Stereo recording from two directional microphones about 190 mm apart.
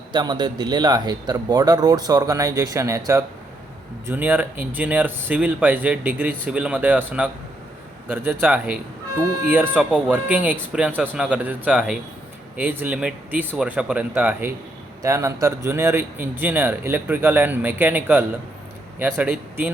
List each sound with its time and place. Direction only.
0.1 s speech: 25° right (ahead or behind)